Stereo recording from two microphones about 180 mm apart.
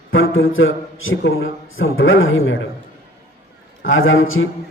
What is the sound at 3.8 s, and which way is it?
Speech, 90° left.